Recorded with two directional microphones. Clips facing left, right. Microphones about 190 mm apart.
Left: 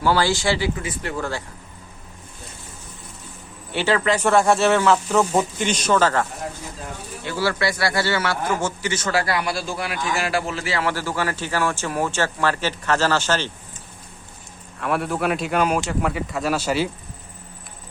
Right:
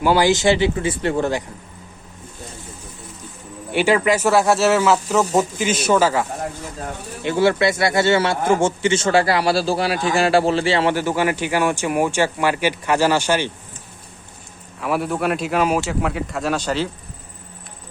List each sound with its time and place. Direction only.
0.0 s speech: 15° right (ahead or behind)
3.7 s speech: 15° right (ahead or behind)
7.2 s speech: 20° right (ahead or behind)
14.8 s speech: centre (ahead or behind)